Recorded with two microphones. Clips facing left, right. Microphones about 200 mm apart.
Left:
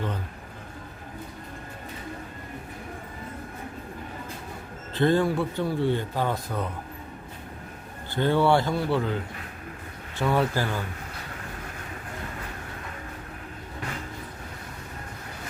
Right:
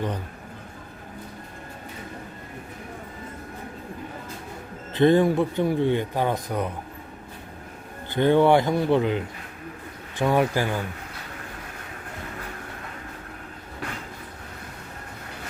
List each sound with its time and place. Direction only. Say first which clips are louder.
4.9 s speech: right 4 dB; 20° right (ahead or behind)
8.1 s speech: right 4 dB; 20° right (ahead or behind)